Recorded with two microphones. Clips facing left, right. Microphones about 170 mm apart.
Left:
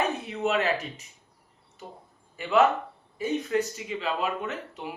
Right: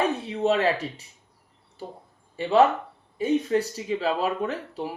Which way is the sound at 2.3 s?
30° right (ahead or behind).